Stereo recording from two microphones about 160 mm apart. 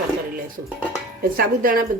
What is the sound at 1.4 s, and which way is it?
Speech, 60° right (ahead or behind).